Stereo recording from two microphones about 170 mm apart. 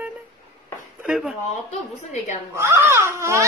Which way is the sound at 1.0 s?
5° right (ahead or behind).